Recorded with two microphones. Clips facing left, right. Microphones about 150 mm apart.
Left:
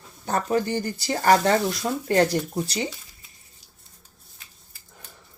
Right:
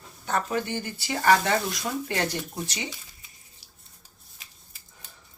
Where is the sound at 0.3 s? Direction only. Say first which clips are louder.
Left 4 dB; 40° left (ahead or behind).